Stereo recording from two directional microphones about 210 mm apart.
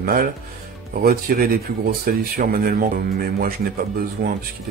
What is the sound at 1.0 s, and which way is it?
Speech, 45° right (ahead or behind).